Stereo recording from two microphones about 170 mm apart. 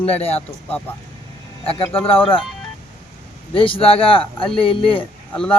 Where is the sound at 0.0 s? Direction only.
35° left (ahead or behind).